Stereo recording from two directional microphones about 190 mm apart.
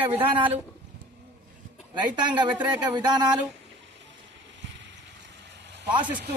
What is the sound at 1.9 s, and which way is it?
A man's voice, 25° right (ahead or behind).